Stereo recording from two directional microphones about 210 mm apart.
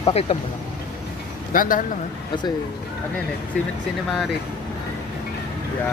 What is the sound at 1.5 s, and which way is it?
Speech, 40° left (ahead or behind).